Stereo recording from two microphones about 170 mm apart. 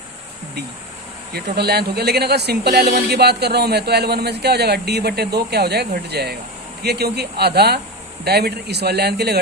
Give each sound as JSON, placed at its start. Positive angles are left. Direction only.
{"t": 1.3, "sound": "a man's voice", "side_deg": -70}